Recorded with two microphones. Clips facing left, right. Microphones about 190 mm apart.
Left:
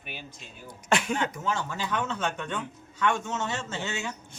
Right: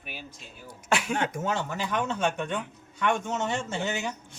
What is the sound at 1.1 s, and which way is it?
Speech, 50° right (ahead or behind).